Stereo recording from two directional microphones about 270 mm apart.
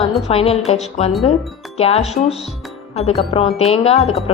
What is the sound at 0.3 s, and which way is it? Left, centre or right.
Speech, left.